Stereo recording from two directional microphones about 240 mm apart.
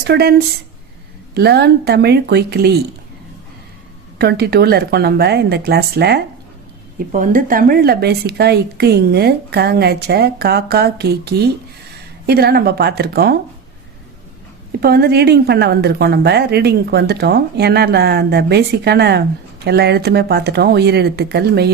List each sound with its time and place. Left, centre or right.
0.1 s a woman's voice: right
4.2 s a woman's voice: right
14.8 s a woman's voice: right